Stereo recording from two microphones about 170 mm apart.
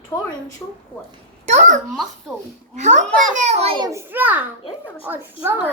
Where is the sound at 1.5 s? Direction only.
45° right (ahead or behind).